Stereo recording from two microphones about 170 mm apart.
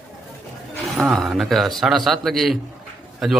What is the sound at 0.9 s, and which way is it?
A man's voice, centre (ahead or behind).